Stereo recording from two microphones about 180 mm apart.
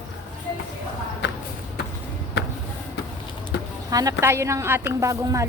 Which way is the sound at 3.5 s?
80° left.